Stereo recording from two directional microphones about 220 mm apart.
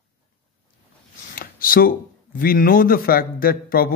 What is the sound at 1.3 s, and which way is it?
Speech, 40° left (ahead or behind).